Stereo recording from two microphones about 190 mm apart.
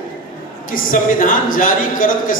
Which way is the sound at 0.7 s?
45° left (ahead or behind).